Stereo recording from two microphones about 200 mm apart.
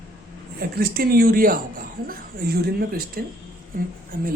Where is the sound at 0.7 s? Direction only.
50° right (ahead or behind).